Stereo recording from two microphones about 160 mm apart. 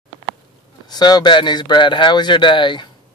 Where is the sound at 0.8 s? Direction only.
25° left (ahead or behind).